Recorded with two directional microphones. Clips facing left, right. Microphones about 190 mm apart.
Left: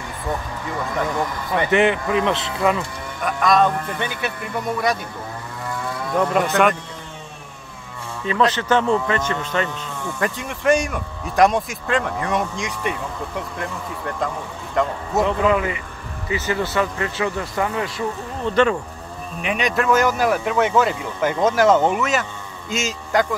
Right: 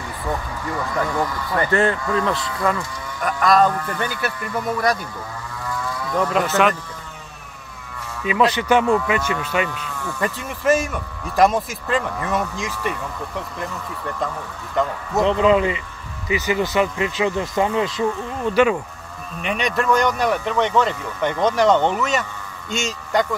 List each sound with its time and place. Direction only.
1.7 s speech: 20° left (ahead or behind)
3.3 s speech: centre (ahead or behind)
6.1 s speech: 5° left (ahead or behind)
8.3 s speech: 10° right (ahead or behind)
9.7 s speech: 20° left (ahead or behind)
10.2 s speech: centre (ahead or behind)
15.2 s speech: 20° right (ahead or behind)
18.4 s speech: 10° right (ahead or behind)
19.4 s speech: centre (ahead or behind)